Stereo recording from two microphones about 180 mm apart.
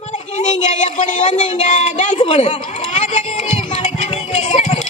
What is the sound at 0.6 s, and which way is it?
A woman's voice, 40° left (ahead or behind).